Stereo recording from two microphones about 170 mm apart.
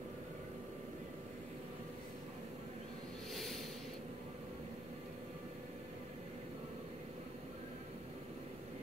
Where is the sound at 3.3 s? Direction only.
Centre (ahead or behind).